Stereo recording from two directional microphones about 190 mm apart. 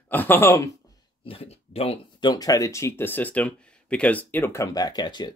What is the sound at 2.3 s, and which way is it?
Speech, 20° left (ahead or behind).